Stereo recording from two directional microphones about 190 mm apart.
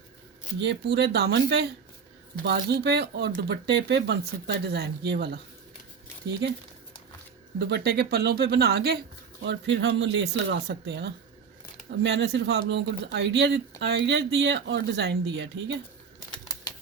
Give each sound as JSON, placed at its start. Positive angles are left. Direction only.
{"t": 0.6, "sound": "speech", "side_deg": -65}
{"t": 7.7, "sound": "speech", "side_deg": -60}
{"t": 9.4, "sound": "speech", "side_deg": -70}